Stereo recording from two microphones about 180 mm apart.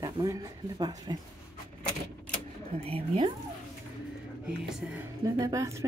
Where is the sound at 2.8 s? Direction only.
30° right (ahead or behind).